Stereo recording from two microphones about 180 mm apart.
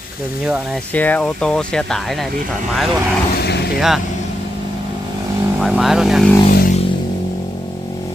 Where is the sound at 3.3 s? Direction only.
65° left (ahead or behind).